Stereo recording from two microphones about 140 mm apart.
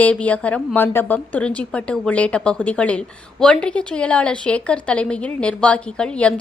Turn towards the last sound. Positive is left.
turn(degrees=10)  # may be behind; listen again after turning